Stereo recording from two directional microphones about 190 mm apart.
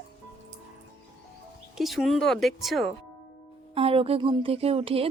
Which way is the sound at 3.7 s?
30° right (ahead or behind).